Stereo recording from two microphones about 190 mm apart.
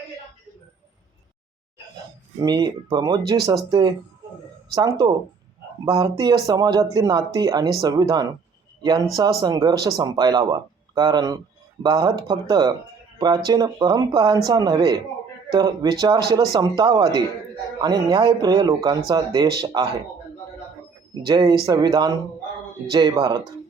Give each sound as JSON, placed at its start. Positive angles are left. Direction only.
{"t": 2.4, "sound": "a man's voice", "side_deg": -20}
{"t": 21.2, "sound": "speech", "side_deg": -25}